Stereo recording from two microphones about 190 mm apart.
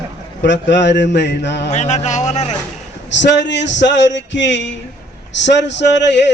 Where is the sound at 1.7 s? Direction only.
35° left (ahead or behind).